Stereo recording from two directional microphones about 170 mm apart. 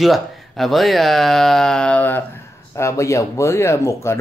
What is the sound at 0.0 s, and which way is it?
Speech, centre (ahead or behind).